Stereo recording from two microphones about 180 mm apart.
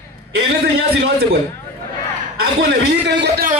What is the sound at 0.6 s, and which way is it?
Speech, 60° right (ahead or behind).